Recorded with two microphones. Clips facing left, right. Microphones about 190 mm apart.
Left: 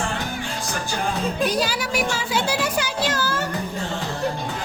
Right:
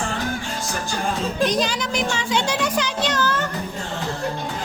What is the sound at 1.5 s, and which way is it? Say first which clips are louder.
Speech: right 1 dB; 5° left (ahead or behind).